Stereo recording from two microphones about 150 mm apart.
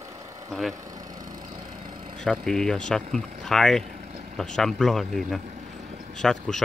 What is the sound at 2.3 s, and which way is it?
Speech, centre (ahead or behind).